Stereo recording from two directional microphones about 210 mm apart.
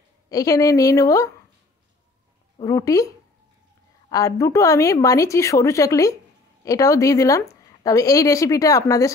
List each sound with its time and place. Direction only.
0.3 s speech: 15° left (ahead or behind)
2.6 s speech: 15° left (ahead or behind)
4.1 s speech: 15° left (ahead or behind)